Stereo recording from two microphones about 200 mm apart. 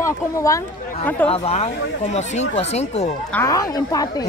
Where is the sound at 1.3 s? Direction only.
30° left (ahead or behind).